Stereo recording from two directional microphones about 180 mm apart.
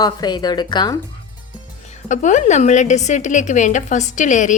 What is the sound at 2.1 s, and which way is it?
A woman's voice, 40° left (ahead or behind).